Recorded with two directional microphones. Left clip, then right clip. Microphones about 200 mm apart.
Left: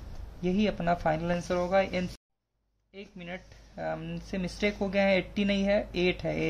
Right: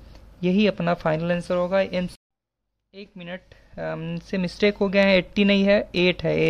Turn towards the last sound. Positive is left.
turn(degrees=-55)  # may be behind; listen again after turning